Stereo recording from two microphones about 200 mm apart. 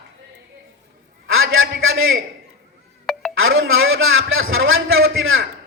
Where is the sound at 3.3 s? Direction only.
80° right.